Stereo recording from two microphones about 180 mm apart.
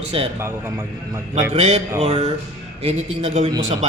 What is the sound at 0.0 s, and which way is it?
Speech, 30° right (ahead or behind).